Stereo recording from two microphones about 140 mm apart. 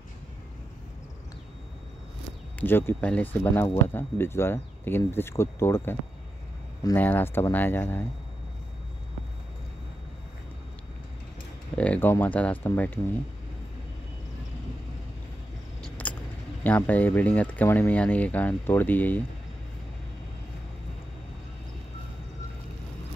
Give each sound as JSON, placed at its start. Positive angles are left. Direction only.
{"t": 2.6, "sound": "speech", "side_deg": 15}
{"t": 7.0, "sound": "speech", "side_deg": 15}
{"t": 11.7, "sound": "speech", "side_deg": 10}
{"t": 15.8, "sound": "a sound", "side_deg": 10}
{"t": 16.6, "sound": "speech", "side_deg": 10}